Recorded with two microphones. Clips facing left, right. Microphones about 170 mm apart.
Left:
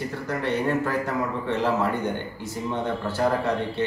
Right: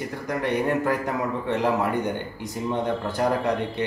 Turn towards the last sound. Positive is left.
turn(degrees=-15)  # may be behind; listen again after turning